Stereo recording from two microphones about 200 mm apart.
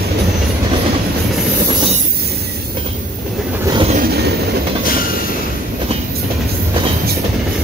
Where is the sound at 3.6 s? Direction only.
25° right (ahead or behind).